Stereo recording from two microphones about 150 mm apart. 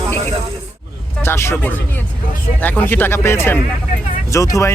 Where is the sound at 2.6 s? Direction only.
15° left (ahead or behind).